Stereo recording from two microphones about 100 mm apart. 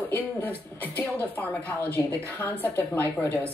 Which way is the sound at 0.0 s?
20° left (ahead or behind).